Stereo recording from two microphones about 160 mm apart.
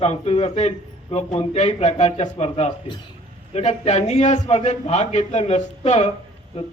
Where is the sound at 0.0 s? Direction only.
40° left (ahead or behind).